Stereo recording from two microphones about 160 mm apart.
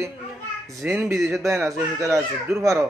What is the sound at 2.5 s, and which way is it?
Speech, 20° right (ahead or behind).